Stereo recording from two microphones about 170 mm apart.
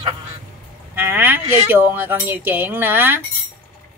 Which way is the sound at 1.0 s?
10° right (ahead or behind).